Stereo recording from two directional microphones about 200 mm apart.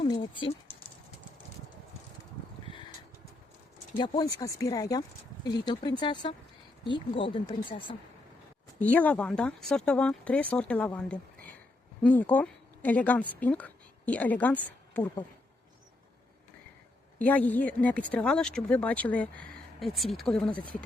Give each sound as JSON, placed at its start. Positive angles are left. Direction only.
{"t": 0.0, "sound": "a sound", "side_deg": 25}
{"t": 3.9, "sound": "speech", "side_deg": 20}
{"t": 8.8, "sound": "speech", "side_deg": 10}
{"t": 17.2, "sound": "speech", "side_deg": 10}